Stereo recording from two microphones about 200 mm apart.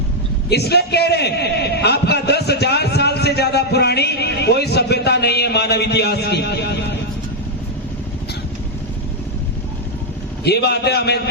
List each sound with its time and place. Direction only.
0.5 s a man's voice: 55° left (ahead or behind)
10.4 s a man's voice: 55° left (ahead or behind)